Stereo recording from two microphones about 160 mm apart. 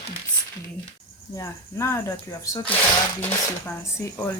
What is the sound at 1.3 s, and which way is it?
Speech, 15° left (ahead or behind).